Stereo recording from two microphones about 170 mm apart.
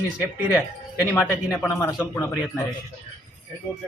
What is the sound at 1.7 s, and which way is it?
Speech, 10° left (ahead or behind).